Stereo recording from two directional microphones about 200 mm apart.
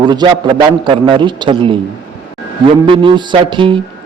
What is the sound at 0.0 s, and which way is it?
A man's voice, 20° right (ahead or behind).